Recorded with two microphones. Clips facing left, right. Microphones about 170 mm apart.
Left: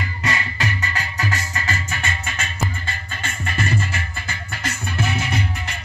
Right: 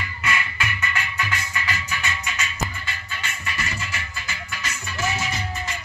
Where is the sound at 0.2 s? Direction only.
35° left (ahead or behind).